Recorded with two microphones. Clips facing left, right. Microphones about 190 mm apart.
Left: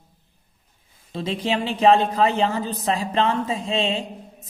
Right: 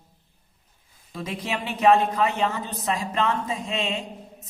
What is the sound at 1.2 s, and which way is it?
A woman's voice, 30° left (ahead or behind).